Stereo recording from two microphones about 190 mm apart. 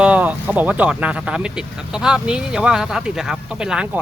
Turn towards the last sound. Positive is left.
turn(degrees=-5)  # may be behind; listen again after turning